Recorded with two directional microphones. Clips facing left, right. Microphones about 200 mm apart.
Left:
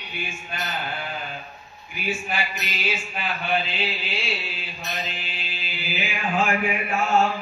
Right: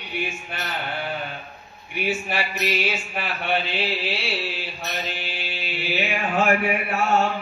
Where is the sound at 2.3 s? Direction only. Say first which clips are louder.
Right 5 dB; 70° right (ahead or behind).